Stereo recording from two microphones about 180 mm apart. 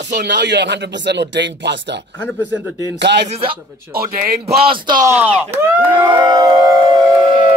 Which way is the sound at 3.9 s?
55° right (ahead or behind).